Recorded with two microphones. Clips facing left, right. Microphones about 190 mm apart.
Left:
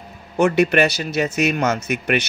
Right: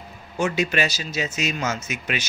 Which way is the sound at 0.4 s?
60° left (ahead or behind).